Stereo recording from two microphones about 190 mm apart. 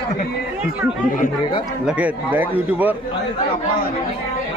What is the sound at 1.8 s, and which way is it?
A man's voice, 10° right (ahead or behind).